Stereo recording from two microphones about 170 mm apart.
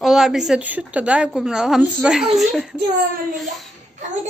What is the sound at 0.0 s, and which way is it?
A woman's voice, centre (ahead or behind).